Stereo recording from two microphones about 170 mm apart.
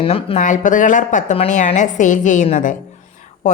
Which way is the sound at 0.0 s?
35° left (ahead or behind).